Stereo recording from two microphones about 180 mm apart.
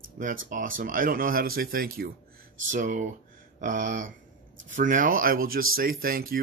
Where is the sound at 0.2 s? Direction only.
50° right (ahead or behind).